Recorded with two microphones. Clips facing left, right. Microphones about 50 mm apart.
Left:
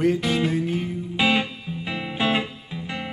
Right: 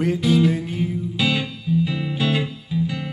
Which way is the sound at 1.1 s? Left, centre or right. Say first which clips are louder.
Left 5 dB; left.